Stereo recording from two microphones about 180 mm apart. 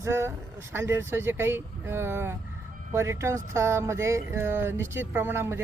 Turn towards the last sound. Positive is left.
turn(degrees=-15)  # may be behind; listen again after turning